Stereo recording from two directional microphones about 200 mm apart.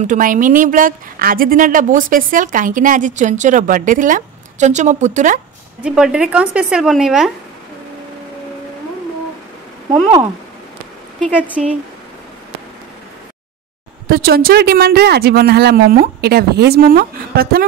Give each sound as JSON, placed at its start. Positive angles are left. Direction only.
{"t": 0.0, "sound": "a woman's voice", "side_deg": -40}
{"t": 5.8, "sound": "a woman's voice", "side_deg": -5}
{"t": 11.6, "sound": "a woman's voice", "side_deg": 0}
{"t": 14.0, "sound": "speech", "side_deg": -50}